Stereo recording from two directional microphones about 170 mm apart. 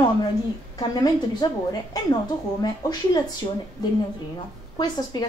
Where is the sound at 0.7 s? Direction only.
20° left (ahead or behind).